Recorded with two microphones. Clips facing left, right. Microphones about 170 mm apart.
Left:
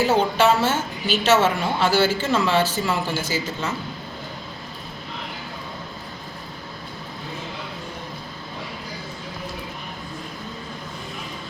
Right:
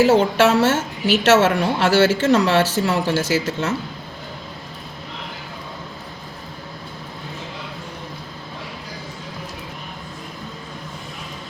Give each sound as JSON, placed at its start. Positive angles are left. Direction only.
{"t": 0.0, "sound": "a woman's voice", "side_deg": -90}